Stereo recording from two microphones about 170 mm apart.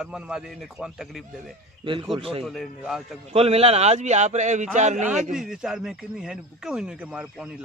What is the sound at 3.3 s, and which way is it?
A man's voice, 35° right (ahead or behind).